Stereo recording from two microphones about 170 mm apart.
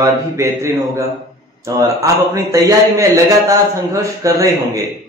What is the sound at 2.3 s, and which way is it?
A man's voice, 20° right (ahead or behind).